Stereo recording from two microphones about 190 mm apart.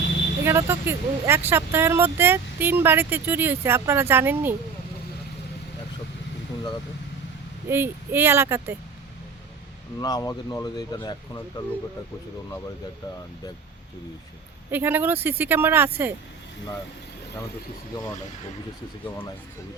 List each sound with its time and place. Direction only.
0.4 s speech: 10° right (ahead or behind)
7.7 s speech: 10° right (ahead or behind)
10.0 s speech: 20° left (ahead or behind)
14.7 s speech: 10° right (ahead or behind)